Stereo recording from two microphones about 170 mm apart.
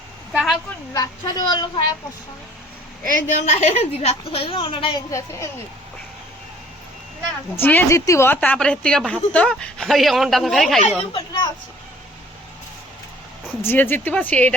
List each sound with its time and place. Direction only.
0.3 s a woman's voice: centre (ahead or behind)
0.9 s speech: 25° left (ahead or behind)
3.1 s a woman's voice: 45° left (ahead or behind); by 5.5 s 20° left (ahead or behind)
7.5 s speech: 10° left (ahead or behind)
11.1 s speech: 25° left (ahead or behind)
13.6 s speech: 15° left (ahead or behind)